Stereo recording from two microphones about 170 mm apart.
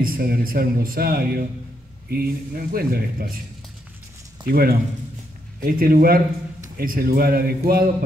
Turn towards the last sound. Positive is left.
turn(degrees=-60)  # may be behind; listen again after turning